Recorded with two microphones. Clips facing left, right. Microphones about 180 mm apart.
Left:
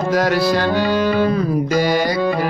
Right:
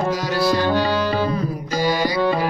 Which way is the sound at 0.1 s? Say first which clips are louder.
Left 4 dB; 65° left (ahead or behind).